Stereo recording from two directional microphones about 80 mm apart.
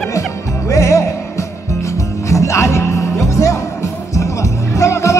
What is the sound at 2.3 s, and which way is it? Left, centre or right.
Music, left.